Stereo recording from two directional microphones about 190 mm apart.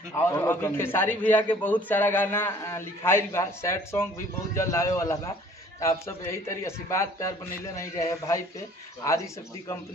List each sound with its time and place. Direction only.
0.1 s a man's voice: 15° left (ahead or behind)